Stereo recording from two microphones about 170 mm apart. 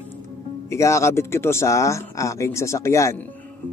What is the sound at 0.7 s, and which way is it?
Speech, 15° left (ahead or behind).